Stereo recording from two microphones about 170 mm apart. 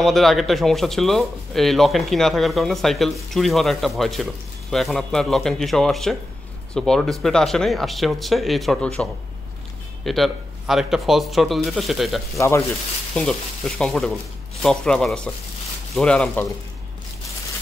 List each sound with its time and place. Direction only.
0.0 s speech: centre (ahead or behind)
12.4 s speech: 15° left (ahead or behind)
13.1 s speech: 5° left (ahead or behind)